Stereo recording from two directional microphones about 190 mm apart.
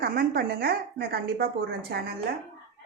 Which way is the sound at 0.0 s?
55° right (ahead or behind).